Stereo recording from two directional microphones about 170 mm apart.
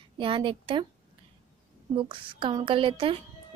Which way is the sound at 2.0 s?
30° right (ahead or behind).